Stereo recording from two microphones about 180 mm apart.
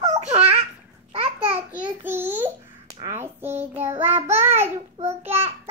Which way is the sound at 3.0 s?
15° right (ahead or behind).